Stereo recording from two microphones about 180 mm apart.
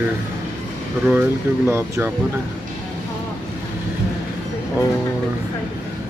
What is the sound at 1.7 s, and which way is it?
Speech, 15° right (ahead or behind).